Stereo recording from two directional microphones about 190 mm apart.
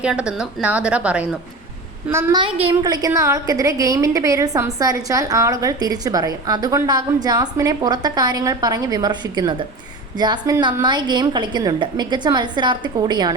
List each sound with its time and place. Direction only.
0.0 s a woman's voice: 5° right (ahead or behind)
2.4 s a woman's voice: 30° right (ahead or behind)